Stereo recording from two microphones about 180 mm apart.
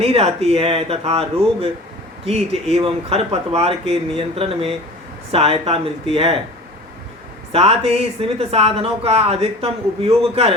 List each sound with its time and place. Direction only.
0.0 s speech: 35° right (ahead or behind)
7.5 s speech: 35° right (ahead or behind)